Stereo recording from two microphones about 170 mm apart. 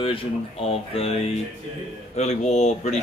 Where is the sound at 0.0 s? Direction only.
35° left (ahead or behind).